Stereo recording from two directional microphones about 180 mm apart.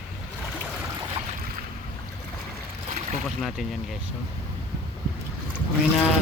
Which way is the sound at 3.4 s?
Centre (ahead or behind).